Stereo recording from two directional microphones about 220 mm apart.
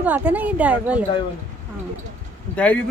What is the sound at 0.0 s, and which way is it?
A woman's voice, 5° right (ahead or behind).